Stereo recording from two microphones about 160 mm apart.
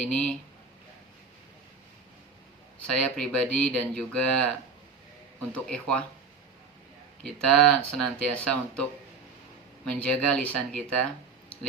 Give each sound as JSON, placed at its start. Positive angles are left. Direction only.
{"t": 0.0, "sound": "speech", "side_deg": 5}
{"t": 2.8, "sound": "speech", "side_deg": 5}
{"t": 7.2, "sound": "speech", "side_deg": 5}
{"t": 9.9, "sound": "speech", "side_deg": 5}